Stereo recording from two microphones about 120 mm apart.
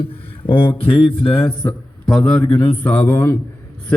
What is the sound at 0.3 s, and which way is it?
Speech, 45° left (ahead or behind).